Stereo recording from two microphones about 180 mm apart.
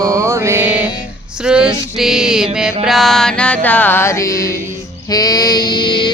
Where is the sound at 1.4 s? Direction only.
5° right (ahead or behind).